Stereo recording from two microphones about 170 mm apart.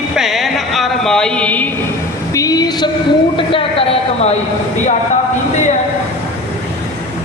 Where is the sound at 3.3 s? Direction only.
30° left (ahead or behind).